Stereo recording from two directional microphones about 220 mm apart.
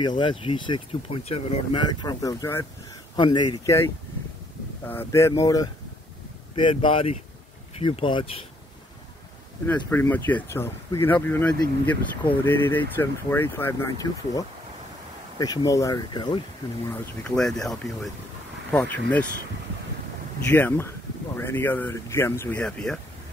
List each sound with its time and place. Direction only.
0.2 s speech: 25° left (ahead or behind)
4.8 s speech: 10° left (ahead or behind)
9.7 s speech: 10° left (ahead or behind)
15.3 s speech: 15° left (ahead or behind)
16.9 s speech: 5° left (ahead or behind)
20.4 s speech: 10° left (ahead or behind)